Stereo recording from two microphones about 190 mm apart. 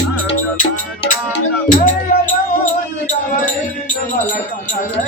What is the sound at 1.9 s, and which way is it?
Music, 45° left (ahead or behind).